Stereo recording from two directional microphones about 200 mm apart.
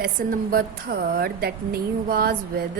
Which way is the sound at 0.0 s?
45° right (ahead or behind).